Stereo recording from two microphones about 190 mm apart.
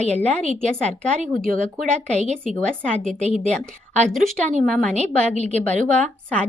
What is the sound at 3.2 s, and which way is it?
Speech, 35° left (ahead or behind).